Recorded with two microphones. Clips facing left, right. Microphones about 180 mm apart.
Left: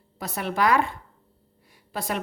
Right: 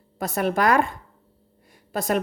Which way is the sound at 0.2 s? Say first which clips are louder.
Right 3 dB; 45° right (ahead or behind).